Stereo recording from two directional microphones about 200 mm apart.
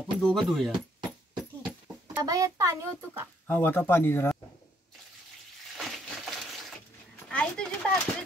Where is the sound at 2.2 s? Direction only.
15° right (ahead or behind).